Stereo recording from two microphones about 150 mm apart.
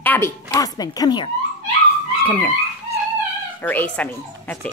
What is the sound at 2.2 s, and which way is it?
Speech, 10° left (ahead or behind).